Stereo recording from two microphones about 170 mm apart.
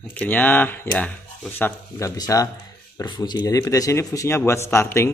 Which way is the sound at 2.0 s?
20° left (ahead or behind).